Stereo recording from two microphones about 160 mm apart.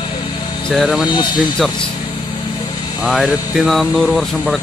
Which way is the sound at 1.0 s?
30° left (ahead or behind).